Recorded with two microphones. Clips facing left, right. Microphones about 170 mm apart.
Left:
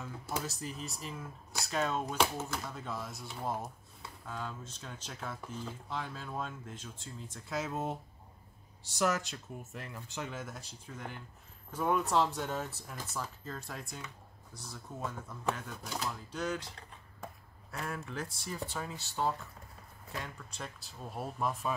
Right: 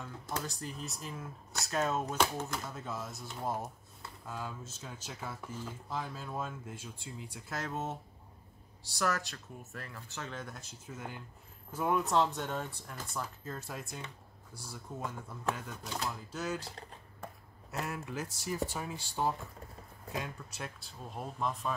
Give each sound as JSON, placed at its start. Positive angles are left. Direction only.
{"t": 0.0, "sound": "speech", "side_deg": 5}
{"t": 7.4, "sound": "speech", "side_deg": 0}
{"t": 10.3, "sound": "speech", "side_deg": 0}
{"t": 16.3, "sound": "speech", "side_deg": -5}
{"t": 17.2, "sound": "chop", "side_deg": -5}
{"t": 18.4, "sound": "speech", "side_deg": -10}
{"t": 21.1, "sound": "speech", "side_deg": 10}